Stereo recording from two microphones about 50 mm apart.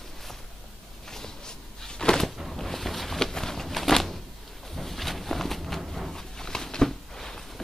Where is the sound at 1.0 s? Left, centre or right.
Centre.